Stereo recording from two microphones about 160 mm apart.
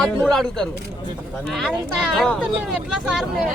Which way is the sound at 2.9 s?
Centre (ahead or behind).